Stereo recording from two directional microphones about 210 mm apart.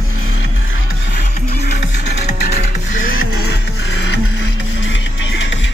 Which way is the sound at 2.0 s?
50° left (ahead or behind).